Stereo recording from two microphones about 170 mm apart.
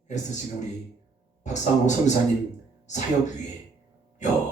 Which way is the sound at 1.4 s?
45° left (ahead or behind).